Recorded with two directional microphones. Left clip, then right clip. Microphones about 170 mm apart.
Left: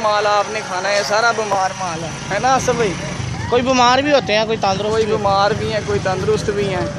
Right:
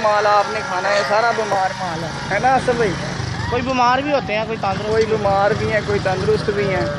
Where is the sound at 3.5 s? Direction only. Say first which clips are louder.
Left 3 dB; 55° left (ahead or behind).